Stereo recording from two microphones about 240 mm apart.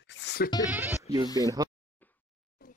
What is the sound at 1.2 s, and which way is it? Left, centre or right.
Speech, centre.